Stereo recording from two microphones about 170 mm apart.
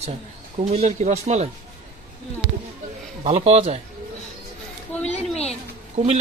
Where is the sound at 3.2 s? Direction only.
35° right (ahead or behind).